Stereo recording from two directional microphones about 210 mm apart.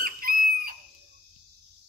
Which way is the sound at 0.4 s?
45° right (ahead or behind).